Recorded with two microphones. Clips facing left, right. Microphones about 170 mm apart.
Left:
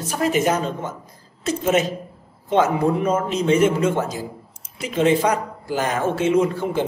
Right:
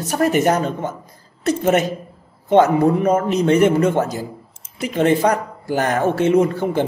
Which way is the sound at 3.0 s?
60° right (ahead or behind).